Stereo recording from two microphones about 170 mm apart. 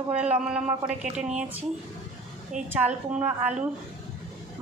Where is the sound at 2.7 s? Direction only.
10° right (ahead or behind).